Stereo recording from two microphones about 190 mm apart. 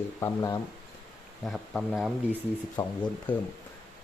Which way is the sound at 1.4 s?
Centre (ahead or behind).